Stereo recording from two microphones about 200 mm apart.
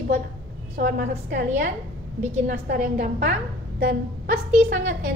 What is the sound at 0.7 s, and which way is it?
A woman's voice, 45° right (ahead or behind).